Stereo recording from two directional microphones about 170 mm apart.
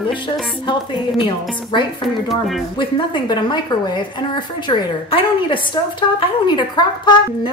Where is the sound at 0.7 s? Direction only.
30° left (ahead or behind).